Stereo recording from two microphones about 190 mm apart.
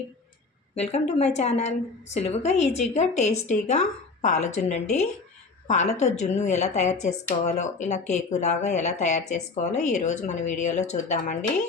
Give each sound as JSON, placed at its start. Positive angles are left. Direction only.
{"t": 0.8, "sound": "speech", "side_deg": 35}